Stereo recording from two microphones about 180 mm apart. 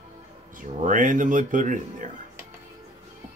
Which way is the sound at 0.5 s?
45° right (ahead or behind).